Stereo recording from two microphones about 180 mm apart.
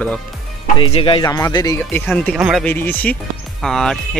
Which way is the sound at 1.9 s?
10° left (ahead or behind).